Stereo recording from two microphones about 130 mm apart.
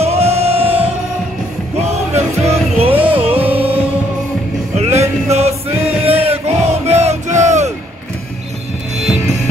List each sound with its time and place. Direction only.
0.0 s music: 55° right (ahead or behind)